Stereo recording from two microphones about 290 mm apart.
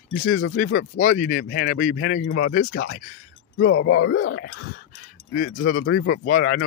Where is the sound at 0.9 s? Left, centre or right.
Left.